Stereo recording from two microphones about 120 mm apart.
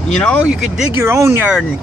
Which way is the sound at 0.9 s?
20° right (ahead or behind).